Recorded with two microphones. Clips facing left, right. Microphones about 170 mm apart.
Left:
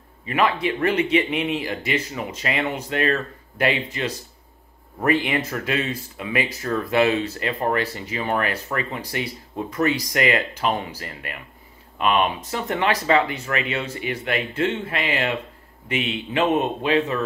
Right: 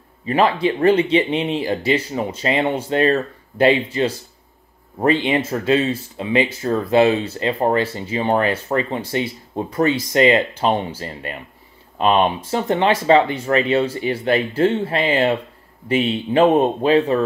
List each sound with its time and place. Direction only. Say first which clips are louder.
0.3 s speech: right 4 dB; 30° right (ahead or behind)